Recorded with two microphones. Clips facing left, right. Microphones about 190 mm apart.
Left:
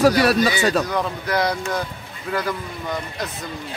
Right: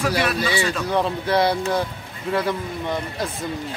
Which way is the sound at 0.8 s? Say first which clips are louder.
Right 3 dB; 30° right (ahead or behind).